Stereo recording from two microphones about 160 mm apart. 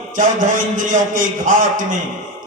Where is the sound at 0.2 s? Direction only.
55° right (ahead or behind).